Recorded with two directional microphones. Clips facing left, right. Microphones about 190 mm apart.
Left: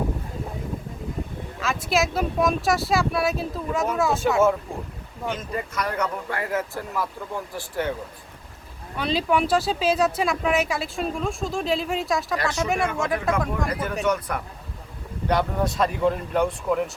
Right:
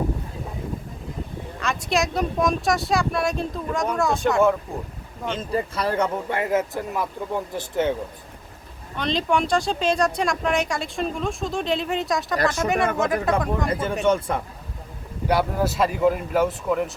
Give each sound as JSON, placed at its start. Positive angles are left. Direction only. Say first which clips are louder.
{"t": 1.5, "sound": "speech", "louder": "even", "side_deg": 0}
{"t": 5.3, "sound": "a man's voice", "louder": "right 5 dB", "side_deg": -30}
{"t": 9.0, "sound": "speech", "louder": "even", "side_deg": 5}
{"t": 13.7, "sound": "a man's voice", "louder": "right 3 dB", "side_deg": -25}
{"t": 15.3, "sound": "speech", "louder": "right 1 dB", "side_deg": -5}